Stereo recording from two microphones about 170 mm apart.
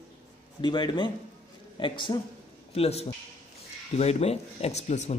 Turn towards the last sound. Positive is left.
turn(degrees=40)  # may be behind; listen again after turning